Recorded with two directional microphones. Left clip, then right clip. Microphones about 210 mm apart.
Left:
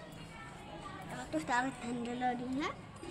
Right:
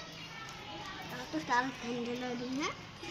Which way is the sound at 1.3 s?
25° left (ahead or behind).